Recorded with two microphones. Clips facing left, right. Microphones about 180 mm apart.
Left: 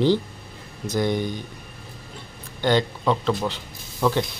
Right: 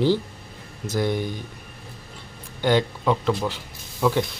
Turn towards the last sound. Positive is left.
turn(degrees=-5)  # may be behind; listen again after turning